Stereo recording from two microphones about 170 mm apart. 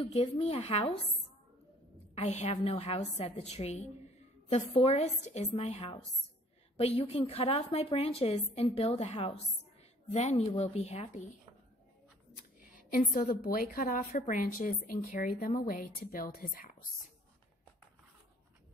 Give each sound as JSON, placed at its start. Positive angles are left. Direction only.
{"t": 0.0, "sound": "a woman's voice", "side_deg": 35}
{"t": 2.1, "sound": "a woman's voice", "side_deg": 40}
{"t": 7.1, "sound": "a woman's voice", "side_deg": 40}
{"t": 12.9, "sound": "a woman's voice", "side_deg": 55}